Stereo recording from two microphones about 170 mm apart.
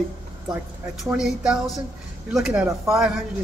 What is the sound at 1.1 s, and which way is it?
A man's voice, 5° right (ahead or behind).